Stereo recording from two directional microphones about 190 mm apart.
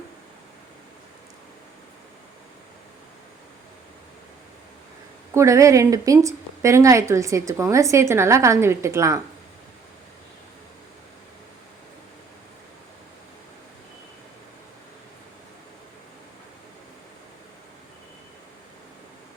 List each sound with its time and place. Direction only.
5.3 s speech: 15° right (ahead or behind)